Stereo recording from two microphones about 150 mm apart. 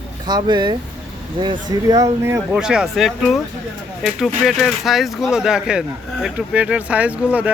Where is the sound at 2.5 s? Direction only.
5° right (ahead or behind).